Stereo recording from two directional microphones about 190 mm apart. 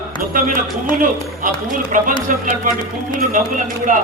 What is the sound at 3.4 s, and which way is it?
Speech, 45° right (ahead or behind).